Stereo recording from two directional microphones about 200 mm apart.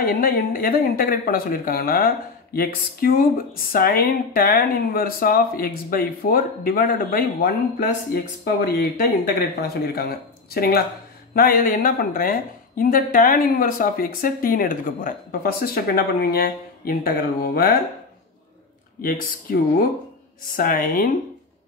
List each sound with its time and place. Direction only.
0.0 s speech: 45° left (ahead or behind)
18.9 s speech: 45° left (ahead or behind)